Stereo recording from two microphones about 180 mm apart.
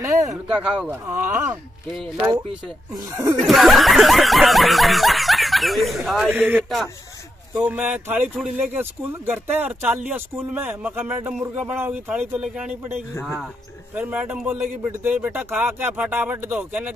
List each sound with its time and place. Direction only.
0.3 s speech: 5° right (ahead or behind); by 3.3 s 20° right (ahead or behind)
3.3 s snicker: centre (ahead or behind)
7.5 s speech: 10° right (ahead or behind)
13.9 s speech: 10° right (ahead or behind)